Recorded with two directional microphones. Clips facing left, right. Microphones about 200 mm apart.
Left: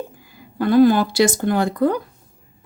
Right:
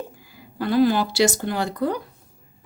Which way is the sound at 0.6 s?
50° left (ahead or behind).